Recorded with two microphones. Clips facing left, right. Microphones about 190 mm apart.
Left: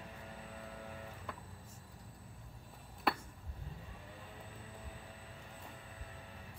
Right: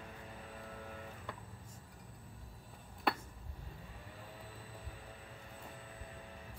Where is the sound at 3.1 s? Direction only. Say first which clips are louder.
Even; centre (ahead or behind).